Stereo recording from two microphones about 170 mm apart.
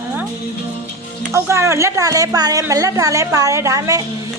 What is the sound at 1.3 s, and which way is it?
A woman's voice, 15° right (ahead or behind).